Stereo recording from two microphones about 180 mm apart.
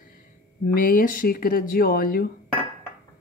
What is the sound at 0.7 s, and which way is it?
A woman's voice, 55° left (ahead or behind).